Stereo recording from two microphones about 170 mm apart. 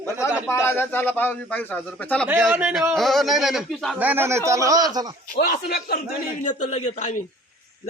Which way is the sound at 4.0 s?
10° right (ahead or behind).